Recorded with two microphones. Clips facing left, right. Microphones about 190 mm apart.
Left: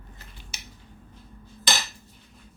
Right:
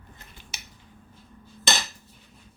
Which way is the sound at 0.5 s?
55° right (ahead or behind).